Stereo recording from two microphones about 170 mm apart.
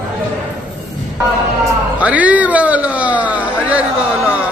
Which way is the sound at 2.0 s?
10° right (ahead or behind).